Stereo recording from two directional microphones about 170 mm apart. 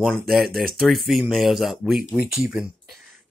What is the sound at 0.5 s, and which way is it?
Speech, 60° right (ahead or behind).